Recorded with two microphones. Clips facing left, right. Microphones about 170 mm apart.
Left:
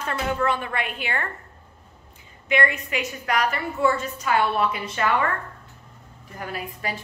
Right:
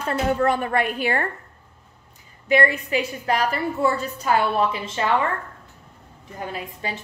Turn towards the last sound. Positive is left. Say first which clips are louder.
# even
turn(degrees=-20)  # may be behind; listen again after turning